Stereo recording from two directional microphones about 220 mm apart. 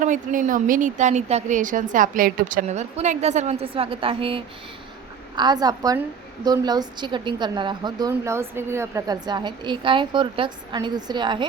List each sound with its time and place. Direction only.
0.0 s a woman's voice: 35° right (ahead or behind); by 11.4 s 20° right (ahead or behind)